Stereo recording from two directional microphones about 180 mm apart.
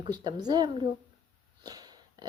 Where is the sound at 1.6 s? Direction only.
20° right (ahead or behind).